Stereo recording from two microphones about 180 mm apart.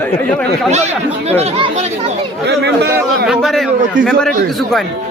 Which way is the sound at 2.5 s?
70° right (ahead or behind).